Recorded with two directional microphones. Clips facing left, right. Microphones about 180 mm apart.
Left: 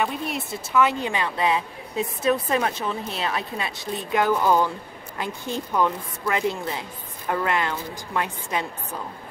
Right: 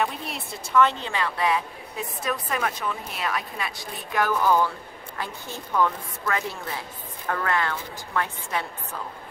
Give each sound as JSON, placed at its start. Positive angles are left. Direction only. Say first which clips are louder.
{"t": 0.0, "sound": "a woman's voice", "louder": "left 2 dB", "side_deg": 0}